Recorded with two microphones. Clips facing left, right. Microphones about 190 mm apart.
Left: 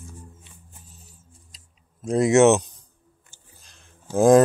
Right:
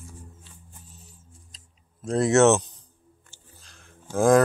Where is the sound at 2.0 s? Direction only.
15° left (ahead or behind).